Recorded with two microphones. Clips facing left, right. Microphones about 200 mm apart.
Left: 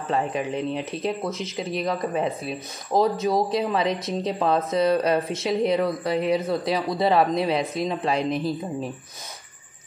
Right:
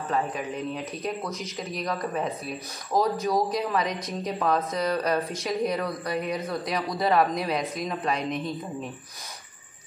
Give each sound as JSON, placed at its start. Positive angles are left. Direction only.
{"t": 0.1, "sound": "a woman's voice", "side_deg": 25}